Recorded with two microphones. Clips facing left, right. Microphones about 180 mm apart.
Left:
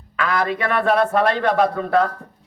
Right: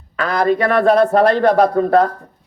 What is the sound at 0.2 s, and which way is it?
A man's voice, 40° right (ahead or behind).